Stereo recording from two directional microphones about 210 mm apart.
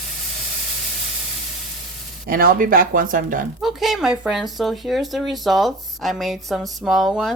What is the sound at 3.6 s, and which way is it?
Speech, centre (ahead or behind).